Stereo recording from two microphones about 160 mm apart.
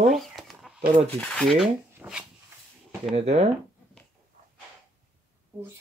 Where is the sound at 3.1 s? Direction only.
45° right (ahead or behind).